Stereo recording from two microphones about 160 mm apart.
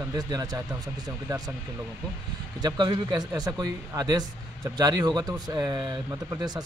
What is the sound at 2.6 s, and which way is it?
Speech, 25° right (ahead or behind).